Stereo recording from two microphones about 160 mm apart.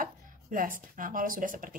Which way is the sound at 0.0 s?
60° right (ahead or behind).